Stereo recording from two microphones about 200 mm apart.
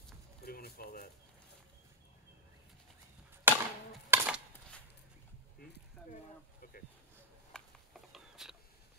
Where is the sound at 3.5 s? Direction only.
10° right (ahead or behind).